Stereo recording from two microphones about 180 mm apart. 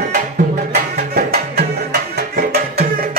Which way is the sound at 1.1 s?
60° right (ahead or behind).